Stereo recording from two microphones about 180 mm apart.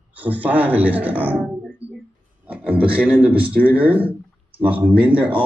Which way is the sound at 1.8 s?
30° right (ahead or behind).